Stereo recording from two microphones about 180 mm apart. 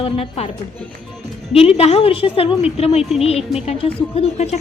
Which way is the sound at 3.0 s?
Centre (ahead or behind).